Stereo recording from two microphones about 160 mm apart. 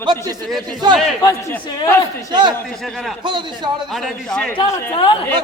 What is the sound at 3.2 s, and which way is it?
Speech, 30° right (ahead or behind).